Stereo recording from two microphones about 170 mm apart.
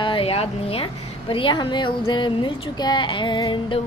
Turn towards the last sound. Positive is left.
turn(degrees=30)  # may be behind; listen again after turning